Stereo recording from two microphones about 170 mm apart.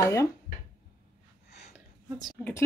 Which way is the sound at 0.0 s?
15° left (ahead or behind).